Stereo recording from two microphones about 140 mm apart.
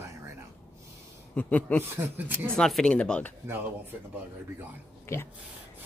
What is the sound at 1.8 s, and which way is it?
Speech, 15° right (ahead or behind).